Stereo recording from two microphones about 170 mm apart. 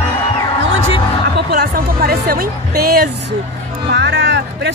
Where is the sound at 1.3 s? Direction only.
60° right (ahead or behind).